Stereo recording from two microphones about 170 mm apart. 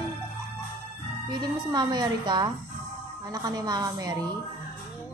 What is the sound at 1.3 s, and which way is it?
A woman's voice, 25° right (ahead or behind).